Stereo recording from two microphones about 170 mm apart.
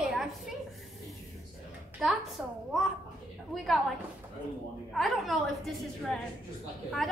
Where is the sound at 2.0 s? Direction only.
5° right (ahead or behind).